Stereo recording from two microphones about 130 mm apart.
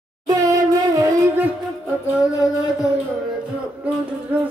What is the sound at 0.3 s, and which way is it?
Music, 25° right (ahead or behind).